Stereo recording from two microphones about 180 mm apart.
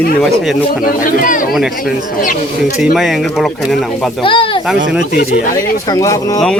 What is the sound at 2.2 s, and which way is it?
Speech, 45° left (ahead or behind).